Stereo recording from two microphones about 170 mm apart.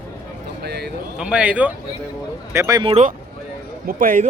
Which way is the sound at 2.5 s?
20° right (ahead or behind).